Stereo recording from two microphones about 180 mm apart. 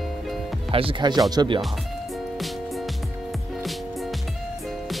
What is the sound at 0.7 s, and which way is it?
Speech, 25° right (ahead or behind).